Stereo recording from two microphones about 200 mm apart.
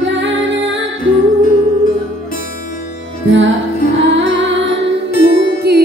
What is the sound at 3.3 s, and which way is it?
Music, 65° right (ahead or behind).